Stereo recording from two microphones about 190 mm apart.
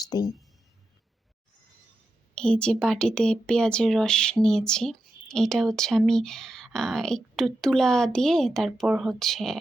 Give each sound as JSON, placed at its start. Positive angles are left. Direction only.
{"t": 0.0, "sound": "speech", "side_deg": 20}
{"t": 2.3, "sound": "a woman's voice", "side_deg": 5}